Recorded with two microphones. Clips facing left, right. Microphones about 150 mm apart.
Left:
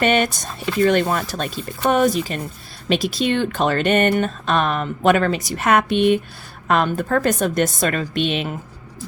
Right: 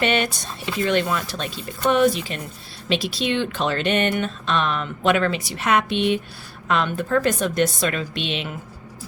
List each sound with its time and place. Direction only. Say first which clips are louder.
0.0 s speech: left 4 dB; 45° left (ahead or behind)